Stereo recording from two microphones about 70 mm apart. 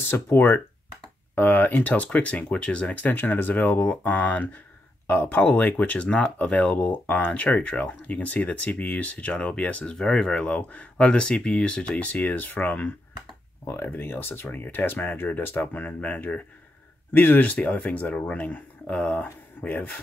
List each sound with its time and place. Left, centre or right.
0.1 s speech: left
9.9 s speech: centre; by 19.9 s left